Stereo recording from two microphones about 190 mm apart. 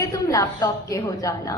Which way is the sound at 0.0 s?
15° left (ahead or behind).